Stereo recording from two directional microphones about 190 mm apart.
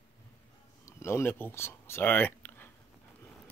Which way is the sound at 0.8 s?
15° left (ahead or behind).